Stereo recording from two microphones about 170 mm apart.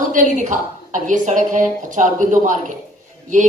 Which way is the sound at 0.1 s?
50° right (ahead or behind).